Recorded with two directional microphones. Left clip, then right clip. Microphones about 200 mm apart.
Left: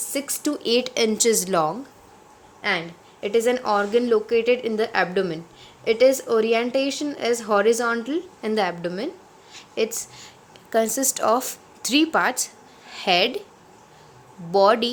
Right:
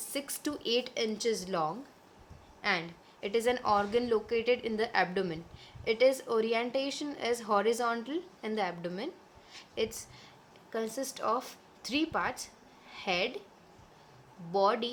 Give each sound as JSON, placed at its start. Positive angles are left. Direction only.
{"t": 0.1, "sound": "speech", "side_deg": 15}
{"t": 2.6, "sound": "speech", "side_deg": 10}
{"t": 14.5, "sound": "speech", "side_deg": 25}